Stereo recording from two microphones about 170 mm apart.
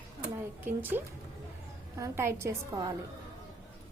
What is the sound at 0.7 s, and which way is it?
A woman's voice, 10° right (ahead or behind).